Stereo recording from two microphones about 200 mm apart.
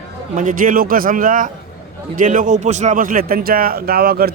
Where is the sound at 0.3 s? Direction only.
40° right (ahead or behind).